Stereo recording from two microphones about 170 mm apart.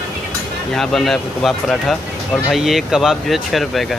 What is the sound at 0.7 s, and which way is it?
Speech, centre (ahead or behind).